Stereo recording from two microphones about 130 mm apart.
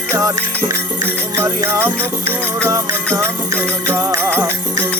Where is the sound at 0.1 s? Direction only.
25° right (ahead or behind).